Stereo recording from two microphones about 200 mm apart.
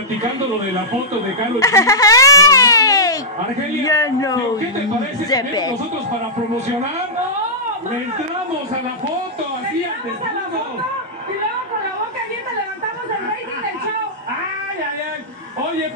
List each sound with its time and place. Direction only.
1.6 s a man's voice: 15° left (ahead or behind)